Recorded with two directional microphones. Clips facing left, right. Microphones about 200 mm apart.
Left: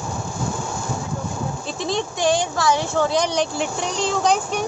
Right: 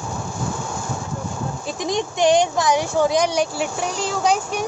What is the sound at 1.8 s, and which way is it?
Speech, 15° right (ahead or behind).